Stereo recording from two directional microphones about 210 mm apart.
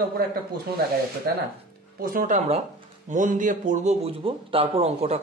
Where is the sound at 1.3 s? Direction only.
45° right (ahead or behind).